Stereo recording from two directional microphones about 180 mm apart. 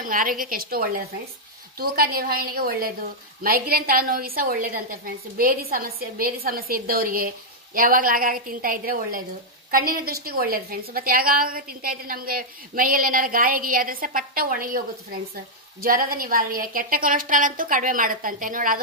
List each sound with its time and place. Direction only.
0.0 s a woman's voice: 50° right (ahead or behind)